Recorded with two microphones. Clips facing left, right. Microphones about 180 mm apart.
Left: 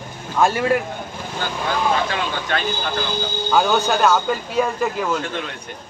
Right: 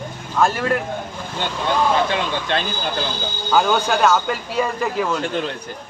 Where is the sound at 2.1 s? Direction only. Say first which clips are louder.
Right 2 dB; 25° right (ahead or behind).